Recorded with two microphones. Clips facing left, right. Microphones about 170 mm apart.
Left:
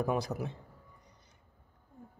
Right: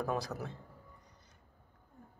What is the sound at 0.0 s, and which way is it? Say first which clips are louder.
Speech: left 4 dB; 15° left (ahead or behind).